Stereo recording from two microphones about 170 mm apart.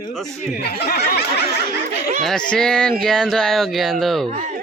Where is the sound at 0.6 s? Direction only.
70° left (ahead or behind).